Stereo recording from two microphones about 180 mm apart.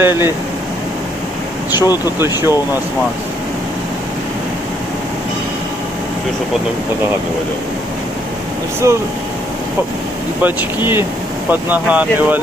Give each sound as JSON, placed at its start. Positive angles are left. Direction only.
{"t": 0.0, "sound": "speech", "side_deg": -15}
{"t": 1.8, "sound": "speech", "side_deg": 20}
{"t": 2.1, "sound": "speech", "side_deg": -15}
{"t": 8.8, "sound": "speech", "side_deg": -15}
{"t": 10.4, "sound": "speech", "side_deg": -10}